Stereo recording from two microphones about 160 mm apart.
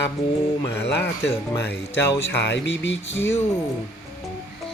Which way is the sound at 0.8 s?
90° left.